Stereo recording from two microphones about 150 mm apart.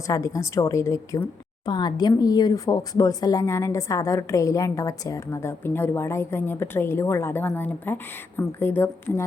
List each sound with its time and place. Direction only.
0.1 s a woman's voice: 20° left (ahead or behind)